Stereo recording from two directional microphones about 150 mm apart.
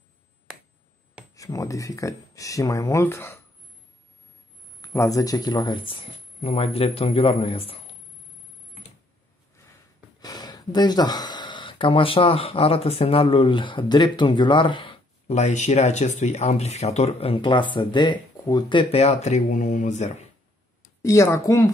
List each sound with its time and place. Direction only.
1.3 s speech: 25° left (ahead or behind)
4.8 s a man's voice: 20° left (ahead or behind); by 7.8 s 40° left (ahead or behind)
10.2 s speech: 25° left (ahead or behind)
15.2 s speech: 45° left (ahead or behind)
21.0 s speech: 20° left (ahead or behind)